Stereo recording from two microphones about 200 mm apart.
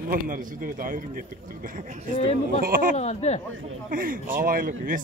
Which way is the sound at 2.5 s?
45° right (ahead or behind).